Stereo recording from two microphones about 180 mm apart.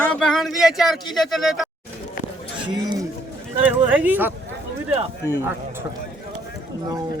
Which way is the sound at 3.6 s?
10° right (ahead or behind).